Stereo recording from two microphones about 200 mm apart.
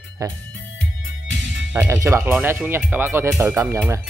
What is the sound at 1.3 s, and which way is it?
Music, 60° right (ahead or behind).